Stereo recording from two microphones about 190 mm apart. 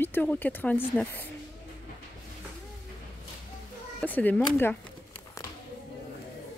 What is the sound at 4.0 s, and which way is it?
Speech, 10° left (ahead or behind).